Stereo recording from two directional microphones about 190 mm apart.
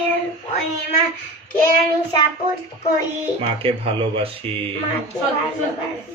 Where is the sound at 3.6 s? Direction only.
30° right (ahead or behind).